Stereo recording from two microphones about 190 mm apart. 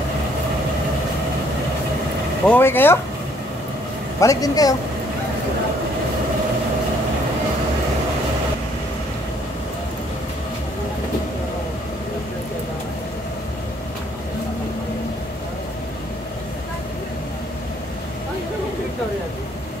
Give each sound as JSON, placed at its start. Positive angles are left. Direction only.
{"t": 2.4, "sound": "speech", "side_deg": 10}
{"t": 4.2, "sound": "speech", "side_deg": 20}